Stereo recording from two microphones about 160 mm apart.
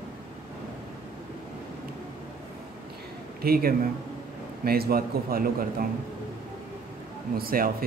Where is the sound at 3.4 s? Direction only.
70° right (ahead or behind).